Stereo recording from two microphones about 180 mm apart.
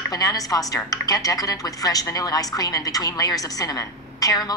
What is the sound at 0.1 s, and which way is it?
A woman's voice, 20° left (ahead or behind).